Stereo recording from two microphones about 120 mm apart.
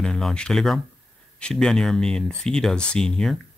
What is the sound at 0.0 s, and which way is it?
Speech, 5° left (ahead or behind).